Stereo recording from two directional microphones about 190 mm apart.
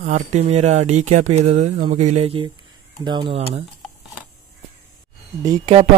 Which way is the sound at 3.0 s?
25° right (ahead or behind).